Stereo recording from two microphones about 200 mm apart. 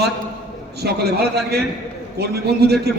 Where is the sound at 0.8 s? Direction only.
55° right (ahead or behind).